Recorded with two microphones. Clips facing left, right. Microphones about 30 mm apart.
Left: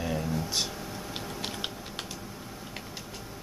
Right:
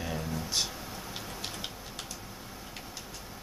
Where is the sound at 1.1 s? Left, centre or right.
Left.